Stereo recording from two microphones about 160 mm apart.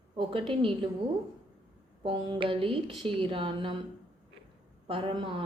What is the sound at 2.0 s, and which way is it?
Speech, 30° right (ahead or behind).